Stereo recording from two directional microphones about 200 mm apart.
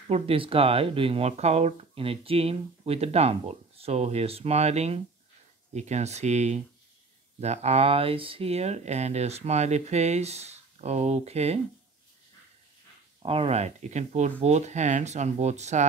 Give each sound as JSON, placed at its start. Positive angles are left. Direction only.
{"t": 0.1, "sound": "speech", "side_deg": -30}
{"t": 13.2, "sound": "speech", "side_deg": -30}